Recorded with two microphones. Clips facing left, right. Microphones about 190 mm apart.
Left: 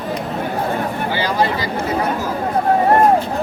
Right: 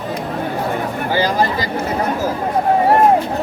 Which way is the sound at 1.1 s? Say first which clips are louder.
Right 3 dB; 40° right (ahead or behind).